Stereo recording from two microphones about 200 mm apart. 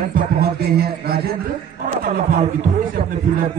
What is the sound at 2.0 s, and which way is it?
A man's voice, 35° right (ahead or behind).